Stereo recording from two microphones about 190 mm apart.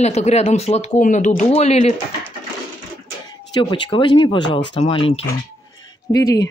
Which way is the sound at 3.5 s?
25° left (ahead or behind).